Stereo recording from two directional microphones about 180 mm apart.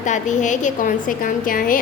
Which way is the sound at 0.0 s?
45° left (ahead or behind).